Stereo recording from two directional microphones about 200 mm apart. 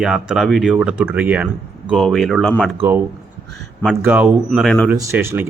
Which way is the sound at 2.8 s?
10° right (ahead or behind).